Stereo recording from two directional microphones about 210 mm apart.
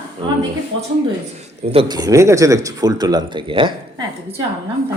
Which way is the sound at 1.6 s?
25° right (ahead or behind).